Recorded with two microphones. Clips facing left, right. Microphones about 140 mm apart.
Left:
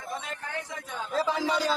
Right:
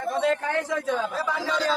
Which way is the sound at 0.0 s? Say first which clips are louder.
Right 13 dB; 80° right.